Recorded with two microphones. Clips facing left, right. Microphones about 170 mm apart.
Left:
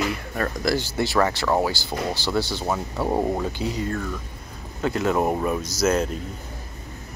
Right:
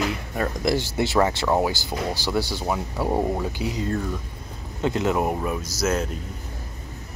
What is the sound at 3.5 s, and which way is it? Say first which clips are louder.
Speech: even; 15° right (ahead or behind).